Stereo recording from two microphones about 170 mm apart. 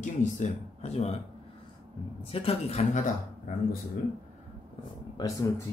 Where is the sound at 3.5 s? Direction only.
50° left (ahead or behind).